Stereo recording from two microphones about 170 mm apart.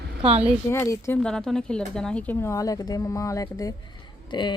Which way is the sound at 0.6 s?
15° left (ahead or behind).